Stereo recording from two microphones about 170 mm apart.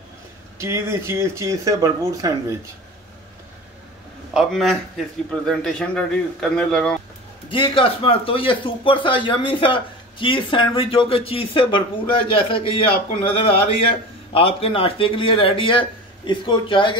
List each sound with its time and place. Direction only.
0.6 s speech: 15° right (ahead or behind)
4.3 s a man's voice: centre (ahead or behind)
7.4 s speech: 30° left (ahead or behind)